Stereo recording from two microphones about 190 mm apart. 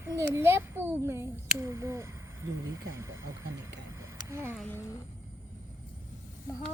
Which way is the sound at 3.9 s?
15° right (ahead or behind).